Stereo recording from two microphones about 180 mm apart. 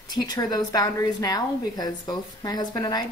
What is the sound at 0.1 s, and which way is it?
A woman's voice, 20° left (ahead or behind).